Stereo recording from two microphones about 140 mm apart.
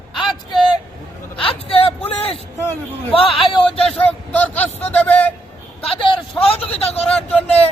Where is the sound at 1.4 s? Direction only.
40° left (ahead or behind).